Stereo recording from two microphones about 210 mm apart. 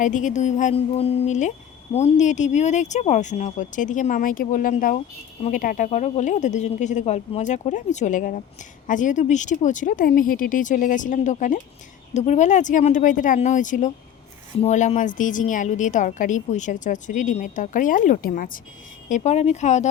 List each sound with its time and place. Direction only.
0.0 s speech: 35° left (ahead or behind)